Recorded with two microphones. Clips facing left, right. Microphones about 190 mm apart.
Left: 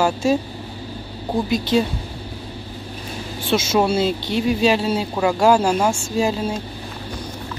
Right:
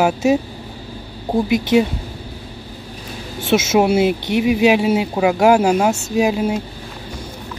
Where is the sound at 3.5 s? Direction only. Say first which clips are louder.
Right 4 dB; 20° right (ahead or behind).